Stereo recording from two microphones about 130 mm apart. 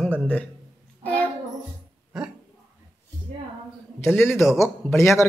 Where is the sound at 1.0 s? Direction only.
15° left (ahead or behind).